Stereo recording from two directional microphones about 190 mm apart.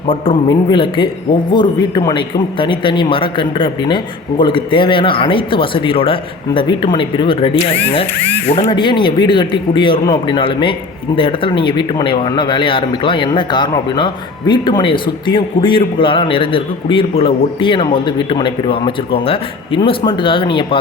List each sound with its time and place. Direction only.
0.1 s speech: 25° left (ahead or behind)